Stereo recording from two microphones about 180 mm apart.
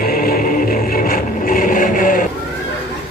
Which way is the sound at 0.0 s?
50° left (ahead or behind).